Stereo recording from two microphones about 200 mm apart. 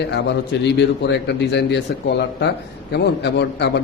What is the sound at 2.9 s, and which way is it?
Speech, 60° left (ahead or behind).